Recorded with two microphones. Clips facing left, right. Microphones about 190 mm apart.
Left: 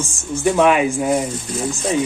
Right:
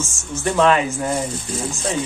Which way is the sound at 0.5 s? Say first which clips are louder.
Left 1 dB; 15° left (ahead or behind).